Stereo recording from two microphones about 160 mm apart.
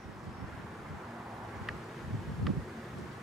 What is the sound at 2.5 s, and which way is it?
Wind, centre (ahead or behind).